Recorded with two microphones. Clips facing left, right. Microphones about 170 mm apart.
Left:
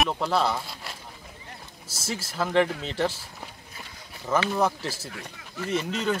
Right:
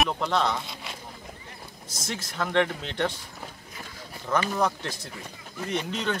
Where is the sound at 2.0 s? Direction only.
5° left (ahead or behind).